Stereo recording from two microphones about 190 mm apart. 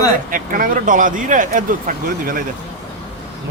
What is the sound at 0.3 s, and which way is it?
A man's voice, 45° right (ahead or behind).